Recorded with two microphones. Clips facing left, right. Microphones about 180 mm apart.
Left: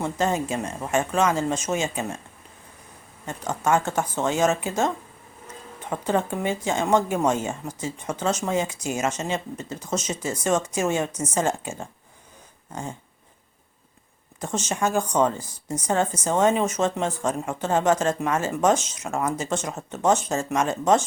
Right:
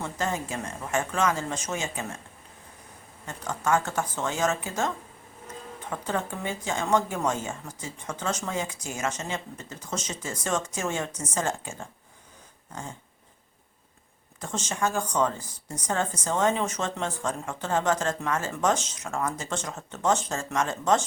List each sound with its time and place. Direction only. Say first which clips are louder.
0.0 s speech: left 6 dB; 20° left (ahead or behind)
3.2 s speech: left 4 dB; 20° left (ahead or behind)
5.9 s speech: left 6 dB; 20° left (ahead or behind)
14.4 s speech: left 4 dB; 20° left (ahead or behind)